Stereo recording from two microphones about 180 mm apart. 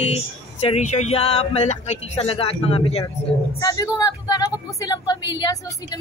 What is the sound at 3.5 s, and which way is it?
Speech, 20° left (ahead or behind).